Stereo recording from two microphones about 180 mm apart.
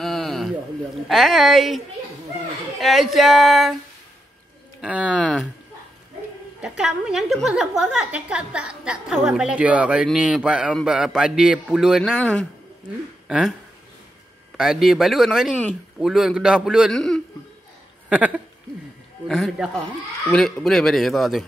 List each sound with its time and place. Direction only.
0.0 s a sound: centre (ahead or behind)
1.0 s a woman's voice: centre (ahead or behind)
2.8 s a woman's voice: centre (ahead or behind)
4.8 s a woman's voice: 5° right (ahead or behind)
6.6 s a woman's voice: 5° right (ahead or behind)
14.6 s a woman's voice: centre (ahead or behind)
18.1 s a woman's voice: 5° right (ahead or behind)